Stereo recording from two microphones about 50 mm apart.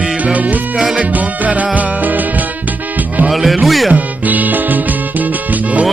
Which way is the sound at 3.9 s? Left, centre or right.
Right.